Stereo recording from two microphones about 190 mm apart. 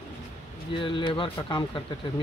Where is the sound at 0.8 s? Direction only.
25° left (ahead or behind).